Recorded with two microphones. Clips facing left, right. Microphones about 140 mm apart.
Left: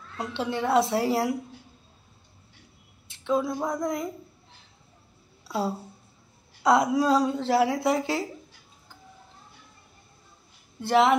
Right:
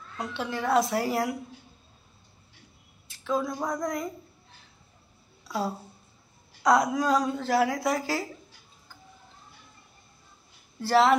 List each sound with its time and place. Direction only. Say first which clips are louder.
0.2 s a woman's voice: left 3 dB; 25° left (ahead or behind)
3.1 s a sound: left 3 dB; 25° left (ahead or behind)
3.6 s a woman's voice: left 2 dB; 25° left (ahead or behind)
6.6 s a woman's voice: left 2 dB; 25° left (ahead or behind)
10.8 s a woman's voice: even; 20° left (ahead or behind)